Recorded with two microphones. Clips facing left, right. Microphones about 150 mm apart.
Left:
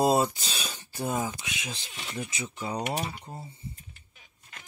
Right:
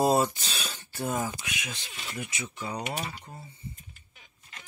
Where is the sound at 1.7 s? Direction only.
Centre (ahead or behind).